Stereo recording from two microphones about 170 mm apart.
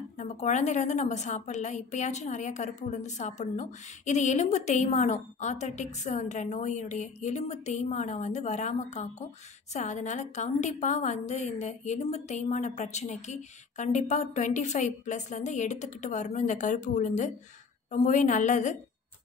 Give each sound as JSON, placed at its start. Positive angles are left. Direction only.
{"t": 0.2, "sound": "a woman's voice", "side_deg": 45}